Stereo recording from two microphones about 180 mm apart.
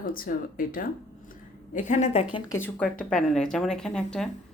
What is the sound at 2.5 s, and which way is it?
Speech, 10° left (ahead or behind).